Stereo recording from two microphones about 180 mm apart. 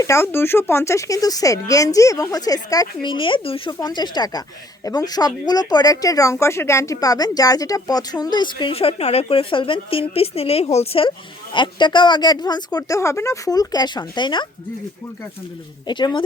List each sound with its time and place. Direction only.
0.0 s speech: 15° left (ahead or behind)
15.9 s speech: 25° left (ahead or behind)